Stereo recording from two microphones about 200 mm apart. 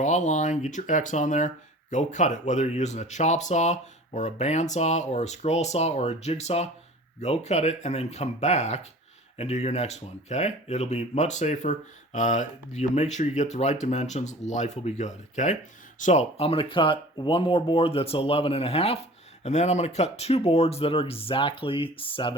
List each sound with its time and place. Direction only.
0.0 s speech: 40° left (ahead or behind)